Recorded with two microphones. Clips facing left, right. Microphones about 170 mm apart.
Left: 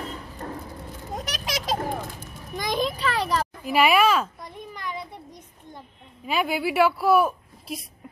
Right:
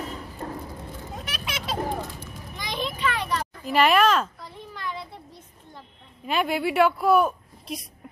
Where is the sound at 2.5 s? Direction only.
45° left (ahead or behind).